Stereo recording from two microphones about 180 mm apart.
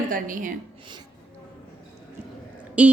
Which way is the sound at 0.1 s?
50° right (ahead or behind).